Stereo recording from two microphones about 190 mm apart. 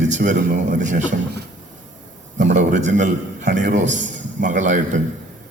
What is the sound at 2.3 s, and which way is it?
A man's voice, 40° right (ahead or behind).